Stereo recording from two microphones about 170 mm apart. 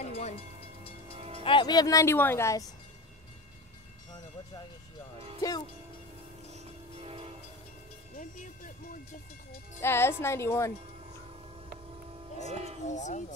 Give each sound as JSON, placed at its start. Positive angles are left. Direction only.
{"t": 0.0, "sound": "train", "side_deg": 40}
{"t": 1.1, "sound": "music", "side_deg": -35}
{"t": 1.4, "sound": "speech", "side_deg": 30}
{"t": 6.5, "sound": "train", "side_deg": -35}
{"t": 8.1, "sound": "music", "side_deg": 50}
{"t": 9.8, "sound": "speech", "side_deg": 15}
{"t": 12.4, "sound": "speech", "side_deg": -35}
{"t": 12.8, "sound": "speech", "side_deg": 45}